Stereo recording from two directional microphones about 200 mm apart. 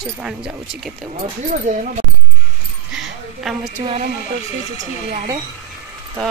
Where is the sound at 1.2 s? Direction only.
40° right (ahead or behind).